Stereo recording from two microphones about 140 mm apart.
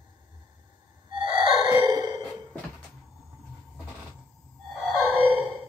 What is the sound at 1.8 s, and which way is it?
Sigh, 30° right (ahead or behind).